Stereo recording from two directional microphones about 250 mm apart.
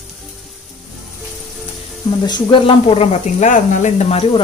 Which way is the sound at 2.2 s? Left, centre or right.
Centre.